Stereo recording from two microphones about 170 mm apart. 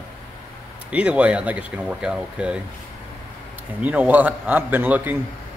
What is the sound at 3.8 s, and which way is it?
Speech, 10° right (ahead or behind).